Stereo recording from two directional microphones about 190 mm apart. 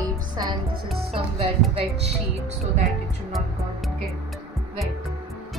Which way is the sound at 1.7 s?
35° right (ahead or behind).